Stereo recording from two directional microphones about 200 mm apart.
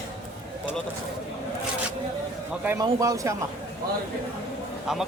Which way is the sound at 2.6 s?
15° right (ahead or behind).